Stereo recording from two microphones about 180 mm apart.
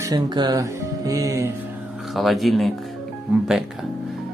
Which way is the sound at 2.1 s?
Centre (ahead or behind).